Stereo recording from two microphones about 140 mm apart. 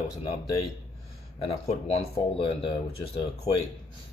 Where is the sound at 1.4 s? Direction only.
50° left (ahead or behind).